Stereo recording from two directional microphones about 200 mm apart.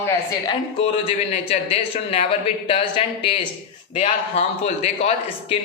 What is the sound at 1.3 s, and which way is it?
A man's voice, 30° left (ahead or behind).